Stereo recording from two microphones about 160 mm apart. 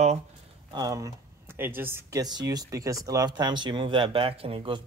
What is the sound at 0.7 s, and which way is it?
A man's voice, 20° right (ahead or behind).